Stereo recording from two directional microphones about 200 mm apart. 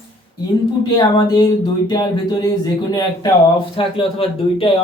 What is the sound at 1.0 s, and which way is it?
Speech, 20° left (ahead or behind).